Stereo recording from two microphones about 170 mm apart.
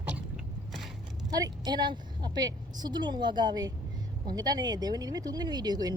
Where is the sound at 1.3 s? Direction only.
20° right (ahead or behind).